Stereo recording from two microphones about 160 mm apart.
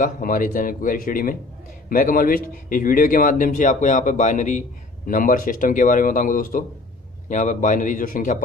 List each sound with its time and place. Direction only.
0.0 s a man's voice: 55° left (ahead or behind)